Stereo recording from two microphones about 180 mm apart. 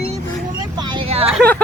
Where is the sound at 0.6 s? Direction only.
25° right (ahead or behind).